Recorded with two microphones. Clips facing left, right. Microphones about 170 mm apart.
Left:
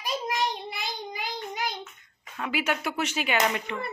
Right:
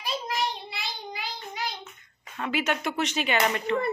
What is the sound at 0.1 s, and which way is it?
Child singing, 20° left (ahead or behind).